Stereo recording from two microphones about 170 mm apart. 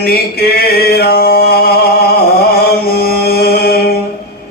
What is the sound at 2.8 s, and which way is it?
Mantra, 65° left (ahead or behind).